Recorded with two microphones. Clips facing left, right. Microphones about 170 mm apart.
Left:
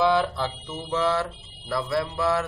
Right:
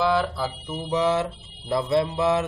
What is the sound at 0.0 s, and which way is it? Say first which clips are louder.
Speech: left 1 dB; centre (ahead or behind).